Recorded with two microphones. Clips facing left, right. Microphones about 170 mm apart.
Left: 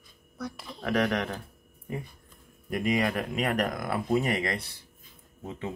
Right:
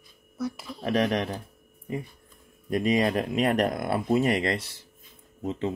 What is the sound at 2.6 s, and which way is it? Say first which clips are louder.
Speech: right 3 dB; 25° right (ahead or behind).